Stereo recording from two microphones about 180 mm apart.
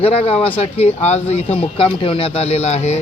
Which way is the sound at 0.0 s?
35° left (ahead or behind).